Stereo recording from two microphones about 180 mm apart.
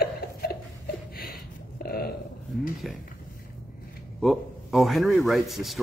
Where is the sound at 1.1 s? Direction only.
55° left (ahead or behind).